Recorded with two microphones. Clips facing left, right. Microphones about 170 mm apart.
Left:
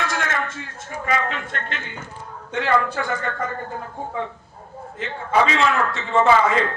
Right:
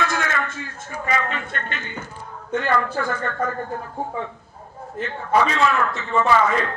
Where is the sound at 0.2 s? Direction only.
90° left.